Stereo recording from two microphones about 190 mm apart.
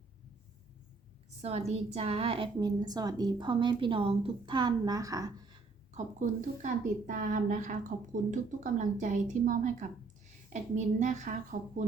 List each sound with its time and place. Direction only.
1.4 s a woman's voice: 35° right (ahead or behind); by 5.5 s 20° right (ahead or behind)
5.9 s a woman's voice: 40° right (ahead or behind)